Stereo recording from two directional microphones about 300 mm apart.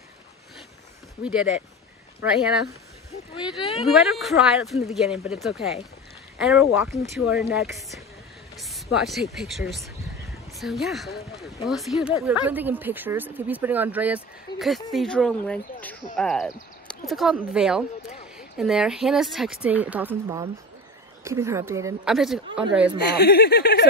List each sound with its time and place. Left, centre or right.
1.2 s speech: centre
3.3 s speech: centre
3.8 s speech: centre
22.9 s speech: left